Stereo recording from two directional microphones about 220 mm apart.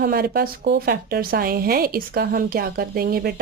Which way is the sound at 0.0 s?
45° right (ahead or behind).